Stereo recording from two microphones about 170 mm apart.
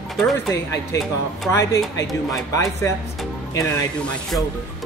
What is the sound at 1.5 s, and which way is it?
Speech, 15° left (ahead or behind).